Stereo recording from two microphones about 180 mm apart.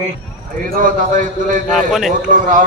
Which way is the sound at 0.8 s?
45° right (ahead or behind).